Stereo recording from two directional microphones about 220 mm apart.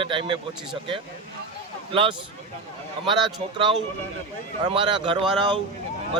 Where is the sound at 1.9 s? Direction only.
25° right (ahead or behind).